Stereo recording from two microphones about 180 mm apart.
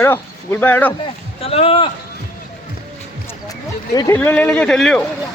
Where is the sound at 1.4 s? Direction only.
35° left (ahead or behind).